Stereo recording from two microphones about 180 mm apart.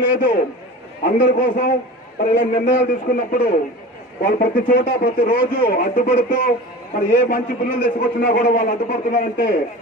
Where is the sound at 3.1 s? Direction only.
55° left (ahead or behind).